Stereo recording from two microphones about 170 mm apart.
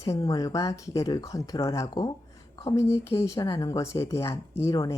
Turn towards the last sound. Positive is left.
turn(degrees=20)  # may be behind; listen again after turning